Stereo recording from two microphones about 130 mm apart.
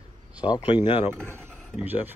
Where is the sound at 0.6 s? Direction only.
40° left (ahead or behind).